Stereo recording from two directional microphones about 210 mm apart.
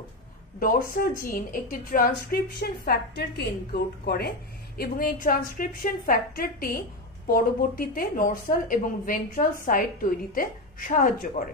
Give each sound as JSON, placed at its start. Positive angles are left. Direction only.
{"t": 0.6, "sound": "a woman's voice", "side_deg": 40}